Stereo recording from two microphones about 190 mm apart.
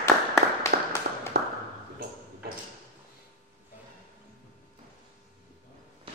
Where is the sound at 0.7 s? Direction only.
50° right (ahead or behind).